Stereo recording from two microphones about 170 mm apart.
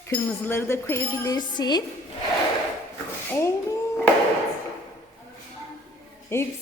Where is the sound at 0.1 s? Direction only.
10° left (ahead or behind).